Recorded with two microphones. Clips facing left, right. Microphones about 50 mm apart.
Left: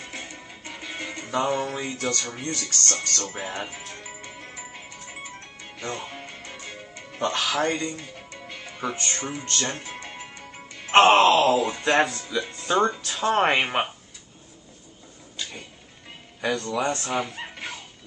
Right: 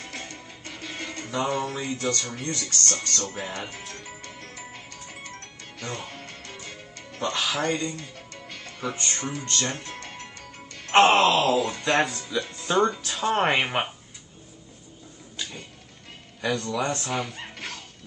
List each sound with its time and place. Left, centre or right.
0.0 s music: centre
2.3 s speech: centre
3.0 s speech: left
3.3 s music: centre
7.3 s speech: centre
7.9 s music: centre
8.9 s speech: left
9.2 s music: centre
10.4 s speech: centre
16.3 s speech: centre